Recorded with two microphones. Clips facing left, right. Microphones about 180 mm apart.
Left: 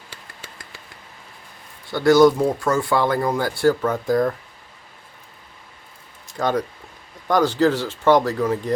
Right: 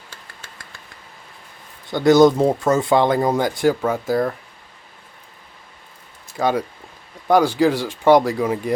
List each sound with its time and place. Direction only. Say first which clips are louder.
1.9 s speech: right 1 dB; 20° right (ahead or behind)
6.3 s speech: right 2 dB; 10° right (ahead or behind)